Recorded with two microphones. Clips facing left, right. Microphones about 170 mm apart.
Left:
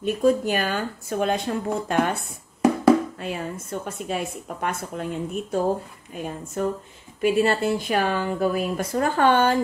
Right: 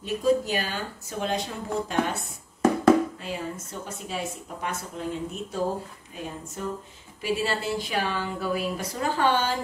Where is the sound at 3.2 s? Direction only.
60° left (ahead or behind).